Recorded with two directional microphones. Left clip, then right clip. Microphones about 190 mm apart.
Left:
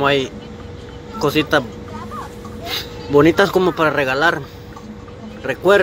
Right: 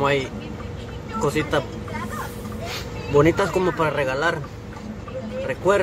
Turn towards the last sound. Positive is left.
turn(degrees=20)  # may be behind; listen again after turning